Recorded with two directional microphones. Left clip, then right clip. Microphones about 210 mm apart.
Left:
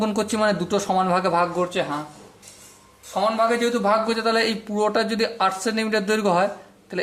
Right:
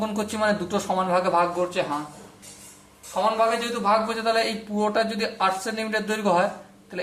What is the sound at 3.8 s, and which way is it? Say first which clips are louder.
Speech: right 1 dB; 45° left (ahead or behind).